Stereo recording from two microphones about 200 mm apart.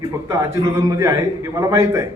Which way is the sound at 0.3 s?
15° right (ahead or behind).